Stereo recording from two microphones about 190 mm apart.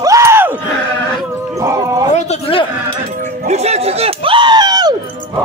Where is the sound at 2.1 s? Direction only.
35° left (ahead or behind).